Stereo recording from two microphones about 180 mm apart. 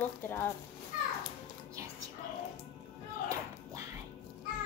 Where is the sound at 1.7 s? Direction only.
20° right (ahead or behind).